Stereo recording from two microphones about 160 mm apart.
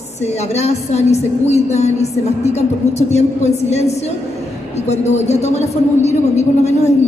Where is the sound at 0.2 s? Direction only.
45° left (ahead or behind).